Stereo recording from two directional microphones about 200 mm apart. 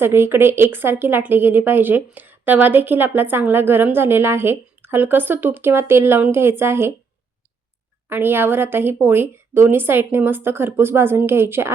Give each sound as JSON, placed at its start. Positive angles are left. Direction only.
{"t": 0.0, "sound": "a woman's voice", "side_deg": -10}
{"t": 8.1, "sound": "a woman's voice", "side_deg": -10}